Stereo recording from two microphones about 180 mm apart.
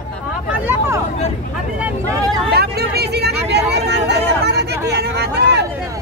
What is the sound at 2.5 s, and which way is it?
Speech, 60° right (ahead or behind).